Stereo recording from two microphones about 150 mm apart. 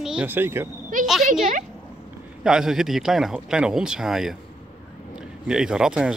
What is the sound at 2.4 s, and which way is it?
Speech, 5° right (ahead or behind).